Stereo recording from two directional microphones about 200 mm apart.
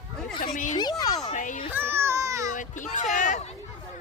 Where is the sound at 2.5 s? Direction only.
40° left (ahead or behind).